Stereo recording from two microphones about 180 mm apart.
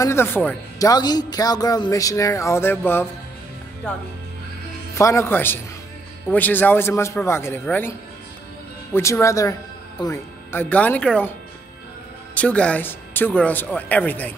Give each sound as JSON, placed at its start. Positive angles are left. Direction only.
{"t": 0.0, "sound": "a man's voice", "side_deg": 15}
{"t": 4.9, "sound": "speech", "side_deg": 15}
{"t": 8.9, "sound": "speech", "side_deg": 15}
{"t": 12.4, "sound": "speech", "side_deg": 5}